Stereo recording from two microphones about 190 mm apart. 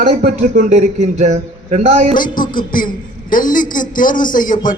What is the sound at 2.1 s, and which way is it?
A man's voice, 45° left (ahead or behind).